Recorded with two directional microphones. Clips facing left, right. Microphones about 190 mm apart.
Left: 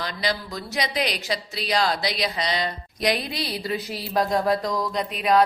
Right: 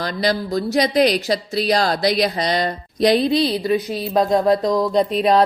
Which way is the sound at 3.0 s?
30° right (ahead or behind).